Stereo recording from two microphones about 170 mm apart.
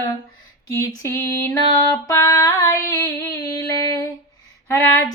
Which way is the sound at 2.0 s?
20° left (ahead or behind).